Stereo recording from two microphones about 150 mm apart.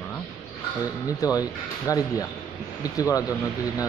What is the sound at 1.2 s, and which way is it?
A man's voice, 25° left (ahead or behind).